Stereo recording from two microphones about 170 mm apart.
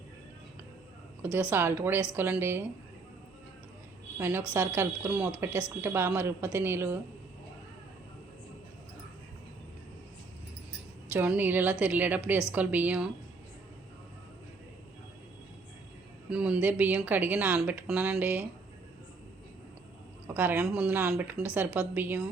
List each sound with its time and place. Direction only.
1.2 s speech: 10° right (ahead or behind)
4.2 s speech: 10° right (ahead or behind)
11.1 s speech: 10° right (ahead or behind)
16.3 s speech: 5° right (ahead or behind)
20.2 s speech: 10° right (ahead or behind)